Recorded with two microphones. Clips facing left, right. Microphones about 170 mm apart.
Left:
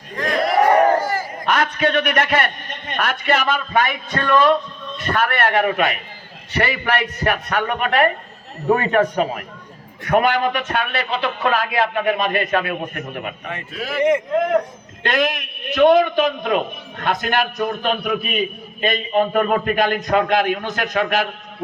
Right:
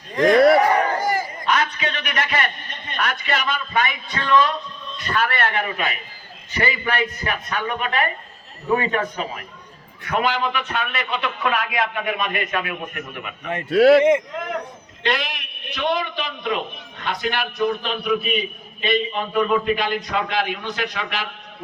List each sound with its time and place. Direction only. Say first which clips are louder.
0.6 s a sound: left 5 dB; 45° left (ahead or behind)
1.5 s a man's voice: left 5 dB; 55° left (ahead or behind)
10.0 s a man's voice: left 5 dB; 50° left (ahead or behind)
13.7 s speech: right 17 dB; 75° right (ahead or behind)
15.0 s a man's voice: left 5 dB; 50° left (ahead or behind)